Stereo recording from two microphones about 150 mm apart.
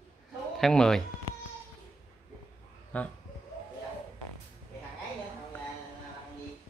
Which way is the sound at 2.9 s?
10° left (ahead or behind).